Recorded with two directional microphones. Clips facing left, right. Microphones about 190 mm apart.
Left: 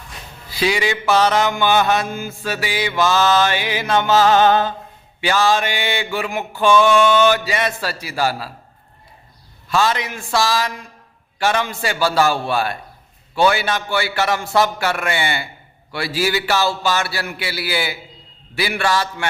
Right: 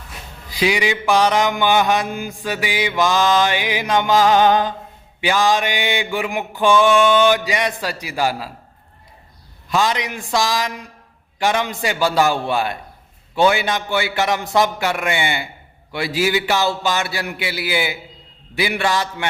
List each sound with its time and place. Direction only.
0.5 s mantra: 15° right (ahead or behind)
9.6 s mantra: 15° right (ahead or behind)
18.5 s a man's voice: 20° right (ahead or behind)